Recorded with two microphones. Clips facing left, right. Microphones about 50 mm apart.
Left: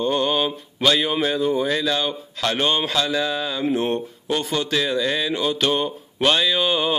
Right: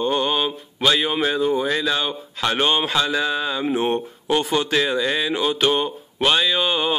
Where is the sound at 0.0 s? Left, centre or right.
Centre.